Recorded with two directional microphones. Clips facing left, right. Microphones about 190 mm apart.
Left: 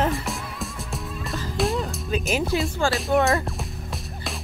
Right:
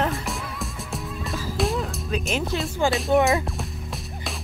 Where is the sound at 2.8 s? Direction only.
20° right (ahead or behind).